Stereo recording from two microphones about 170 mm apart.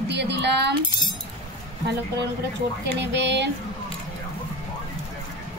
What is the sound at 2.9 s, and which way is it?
Speech, 90° right.